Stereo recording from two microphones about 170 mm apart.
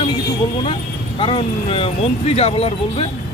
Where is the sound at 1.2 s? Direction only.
30° left (ahead or behind).